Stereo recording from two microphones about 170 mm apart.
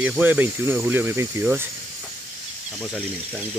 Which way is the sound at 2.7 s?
5° right (ahead or behind).